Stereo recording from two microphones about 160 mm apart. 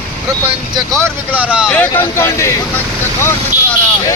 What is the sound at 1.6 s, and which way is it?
Speech, 10° left (ahead or behind).